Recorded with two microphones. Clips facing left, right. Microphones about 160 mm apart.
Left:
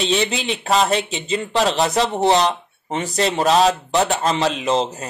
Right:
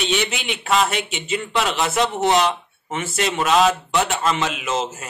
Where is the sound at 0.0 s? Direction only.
30° left (ahead or behind).